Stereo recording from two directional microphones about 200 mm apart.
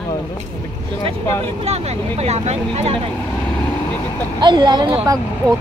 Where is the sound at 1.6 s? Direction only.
30° right (ahead or behind).